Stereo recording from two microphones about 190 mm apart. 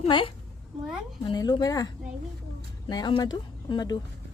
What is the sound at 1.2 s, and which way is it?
A woman's voice, 20° left (ahead or behind).